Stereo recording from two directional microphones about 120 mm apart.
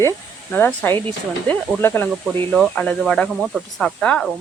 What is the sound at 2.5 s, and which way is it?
Speech, 5° left (ahead or behind).